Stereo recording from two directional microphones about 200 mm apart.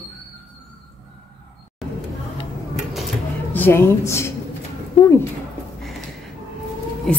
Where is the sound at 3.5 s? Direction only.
10° left (ahead or behind).